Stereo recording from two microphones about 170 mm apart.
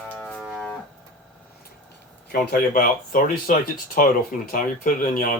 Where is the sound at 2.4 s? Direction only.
60° left (ahead or behind).